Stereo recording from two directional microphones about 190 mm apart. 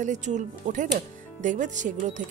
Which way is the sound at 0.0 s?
40° right (ahead or behind).